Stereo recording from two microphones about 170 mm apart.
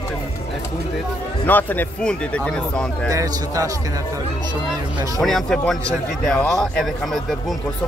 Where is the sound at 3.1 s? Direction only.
20° right (ahead or behind).